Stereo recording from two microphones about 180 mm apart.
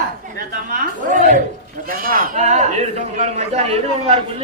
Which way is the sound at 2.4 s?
40° right (ahead or behind).